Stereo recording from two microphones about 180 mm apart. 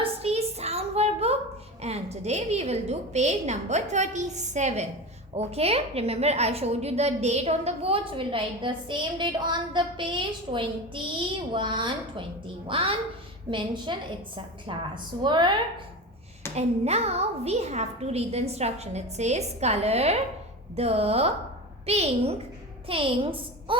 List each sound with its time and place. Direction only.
0.0 s a sound: 35° right (ahead or behind)
1.8 s a woman's voice: 35° right (ahead or behind)
16.6 s a woman's voice: 35° right (ahead or behind)